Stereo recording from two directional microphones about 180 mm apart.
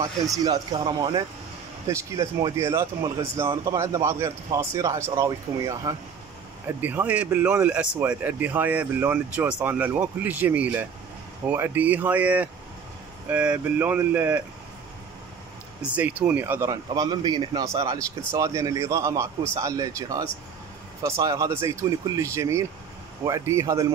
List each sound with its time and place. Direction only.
0.4 s a man's voice: 25° right (ahead or behind)
6.8 s a man's voice: 10° right (ahead or behind)
15.9 s a man's voice: 5° right (ahead or behind)